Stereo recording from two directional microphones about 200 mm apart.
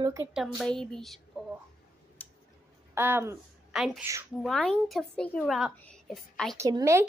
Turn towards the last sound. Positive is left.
turn(degrees=-15)  # may be behind; listen again after turning